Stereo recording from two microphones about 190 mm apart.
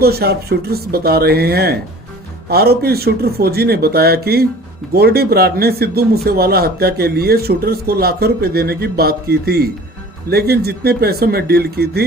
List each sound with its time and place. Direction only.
0.0 s speech: 55° right (ahead or behind)